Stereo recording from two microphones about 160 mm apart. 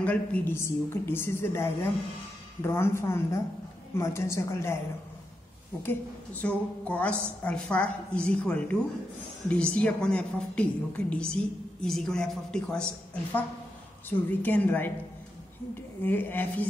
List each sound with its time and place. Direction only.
0.0 s a woman's voice: 10° left (ahead or behind)
5.8 s a woman's voice: 10° left (ahead or behind)
16.0 s a woman's voice: 10° left (ahead or behind)